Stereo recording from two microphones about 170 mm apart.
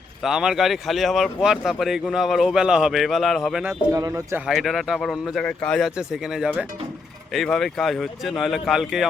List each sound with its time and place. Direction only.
0.2 s speech: 5° right (ahead or behind)
3.9 s speech: 20° right (ahead or behind)
4.4 s speech: centre (ahead or behind)